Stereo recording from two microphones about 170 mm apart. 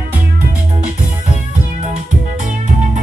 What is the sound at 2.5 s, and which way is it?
Music, 45° right (ahead or behind).